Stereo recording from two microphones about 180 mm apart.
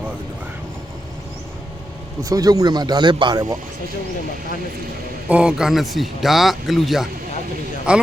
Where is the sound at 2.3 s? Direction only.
20° right (ahead or behind).